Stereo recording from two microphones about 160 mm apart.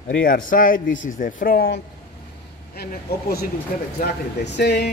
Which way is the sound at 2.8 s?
80° left.